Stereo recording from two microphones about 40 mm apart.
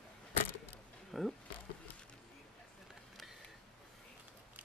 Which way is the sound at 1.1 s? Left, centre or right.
Centre.